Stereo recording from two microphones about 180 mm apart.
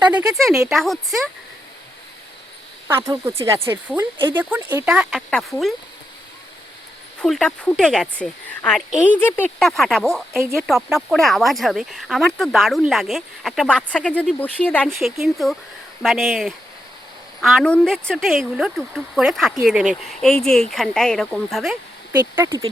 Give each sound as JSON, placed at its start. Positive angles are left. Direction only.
{"t": 0.4, "sound": "speech", "side_deg": 0}
{"t": 2.8, "sound": "speech", "side_deg": -15}
{"t": 7.2, "sound": "speech", "side_deg": 5}
{"t": 22.4, "sound": "speech", "side_deg": -15}